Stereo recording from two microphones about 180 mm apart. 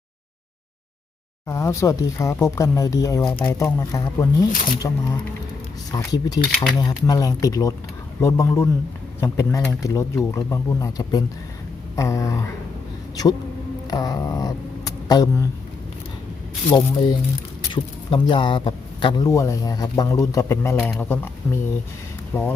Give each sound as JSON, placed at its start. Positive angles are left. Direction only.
{"t": 1.5, "sound": "speech", "side_deg": 15}
{"t": 13.9, "sound": "speech", "side_deg": 20}
{"t": 17.7, "sound": "speech", "side_deg": 25}